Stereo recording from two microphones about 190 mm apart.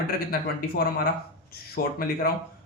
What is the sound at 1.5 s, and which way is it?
Speech, 50° left (ahead or behind).